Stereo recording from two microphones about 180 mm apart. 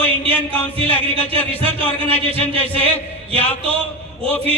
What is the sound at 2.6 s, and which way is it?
A man's voice, 10° left (ahead or behind).